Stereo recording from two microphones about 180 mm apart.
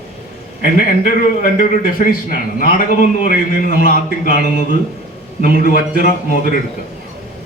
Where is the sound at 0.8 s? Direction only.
45° left (ahead or behind).